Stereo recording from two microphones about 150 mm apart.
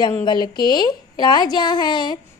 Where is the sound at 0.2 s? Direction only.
30° left (ahead or behind).